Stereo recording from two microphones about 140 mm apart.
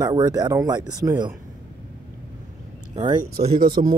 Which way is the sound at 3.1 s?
90° right.